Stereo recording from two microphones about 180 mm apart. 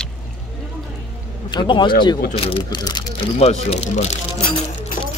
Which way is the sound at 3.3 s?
35° left (ahead or behind).